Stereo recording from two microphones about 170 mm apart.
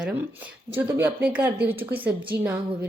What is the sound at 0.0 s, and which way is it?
Speech, 10° right (ahead or behind).